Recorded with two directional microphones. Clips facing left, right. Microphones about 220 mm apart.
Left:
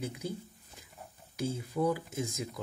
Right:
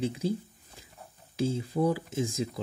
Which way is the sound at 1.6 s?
30° right (ahead or behind).